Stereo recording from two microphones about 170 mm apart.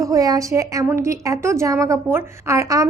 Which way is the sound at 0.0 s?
20° right (ahead or behind).